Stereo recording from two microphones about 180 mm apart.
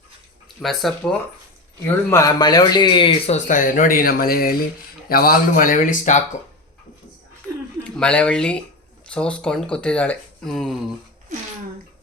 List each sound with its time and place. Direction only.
0.6 s speech: centre (ahead or behind)
2.0 s speech: 15° left (ahead or behind)
3.3 s speech: 45° left (ahead or behind)
7.9 s speech: 5° left (ahead or behind)